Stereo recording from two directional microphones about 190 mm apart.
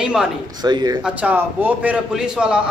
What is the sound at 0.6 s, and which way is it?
Speech, 20° right (ahead or behind).